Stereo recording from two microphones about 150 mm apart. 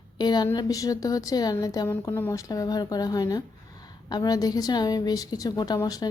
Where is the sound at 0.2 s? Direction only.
30° left (ahead or behind).